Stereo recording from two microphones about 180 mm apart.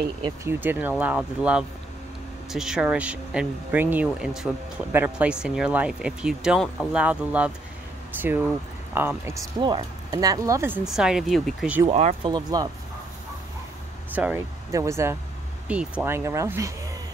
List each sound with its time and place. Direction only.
0.2 s speech: 15° right (ahead or behind)
9.6 s speech: 25° right (ahead or behind)
10.9 s speech: 5° right (ahead or behind)
11.8 s speech: 35° right (ahead or behind)
12.2 s speech: 25° right (ahead or behind)
14.1 s speech: 10° right (ahead or behind)